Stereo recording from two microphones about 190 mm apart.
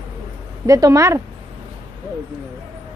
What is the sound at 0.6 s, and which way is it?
Speech, 15° right (ahead or behind).